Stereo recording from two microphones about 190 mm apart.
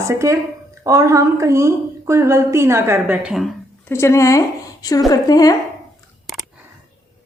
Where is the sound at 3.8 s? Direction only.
15° left (ahead or behind).